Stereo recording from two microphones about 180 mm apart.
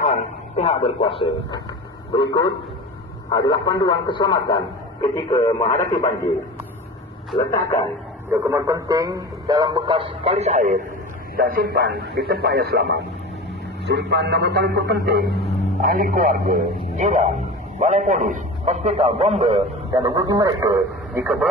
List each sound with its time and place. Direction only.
0.0 s a man's voice: 35° left (ahead or behind); by 5.9 s 15° left (ahead or behind)
7.3 s speech: 15° left (ahead or behind)
8.3 s a man's voice: 15° right (ahead or behind); by 13.0 s 60° right (ahead or behind)
13.8 s a man's voice: 75° right (ahead or behind); by 19.6 s 35° right (ahead or behind)
20.0 s a man's voice: 20° right (ahead or behind)